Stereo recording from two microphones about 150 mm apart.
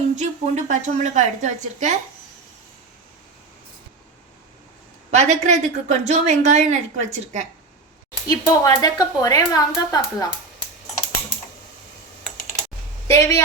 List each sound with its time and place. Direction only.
0.2 s a woman's voice: 55° right (ahead or behind)
5.1 s a woman's voice: 50° right (ahead or behind)
8.3 s a woman's voice: 25° left (ahead or behind)
13.1 s speech: 20° left (ahead or behind)